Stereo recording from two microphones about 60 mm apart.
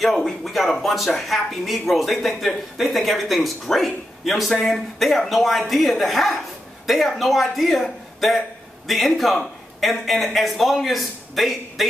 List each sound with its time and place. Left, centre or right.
0.0 s speech: centre